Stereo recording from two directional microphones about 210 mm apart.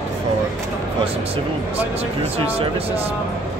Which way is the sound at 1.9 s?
30° right (ahead or behind).